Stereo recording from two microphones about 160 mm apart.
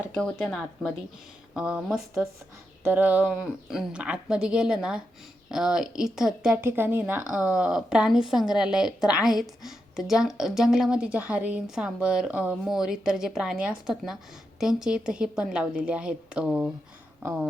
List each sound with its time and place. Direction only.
0.1 s speech: 5° left (ahead or behind)